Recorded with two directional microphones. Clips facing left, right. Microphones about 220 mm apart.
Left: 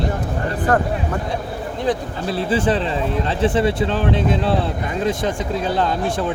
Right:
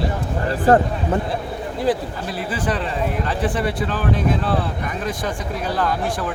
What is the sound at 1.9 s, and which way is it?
Speech, 5° right (ahead or behind).